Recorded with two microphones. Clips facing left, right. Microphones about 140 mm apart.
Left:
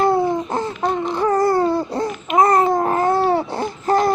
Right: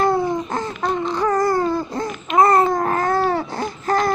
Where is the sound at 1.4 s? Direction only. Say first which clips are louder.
Left 2 dB; 30° left (ahead or behind).